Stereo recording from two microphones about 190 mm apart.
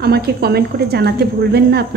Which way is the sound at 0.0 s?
55° right (ahead or behind).